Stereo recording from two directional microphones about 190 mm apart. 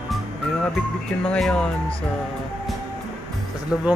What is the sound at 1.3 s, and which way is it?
Speech, 5° left (ahead or behind).